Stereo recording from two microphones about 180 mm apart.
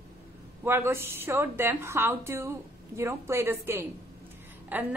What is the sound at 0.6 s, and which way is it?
A woman's voice, 15° right (ahead or behind).